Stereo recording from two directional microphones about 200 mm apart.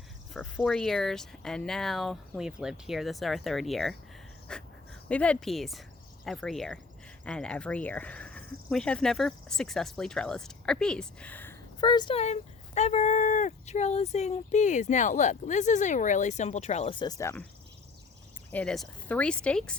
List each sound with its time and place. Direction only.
0.3 s speech: centre (ahead or behind)
11.8 s speech: 20° left (ahead or behind)
18.5 s speech: 5° left (ahead or behind)